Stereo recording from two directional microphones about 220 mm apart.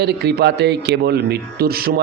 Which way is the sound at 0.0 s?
50° right (ahead or behind).